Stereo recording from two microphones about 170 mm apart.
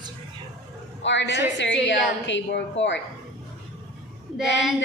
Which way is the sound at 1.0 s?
90° left.